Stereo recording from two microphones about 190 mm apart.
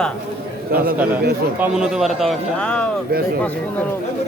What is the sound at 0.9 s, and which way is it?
Speech, 10° right (ahead or behind).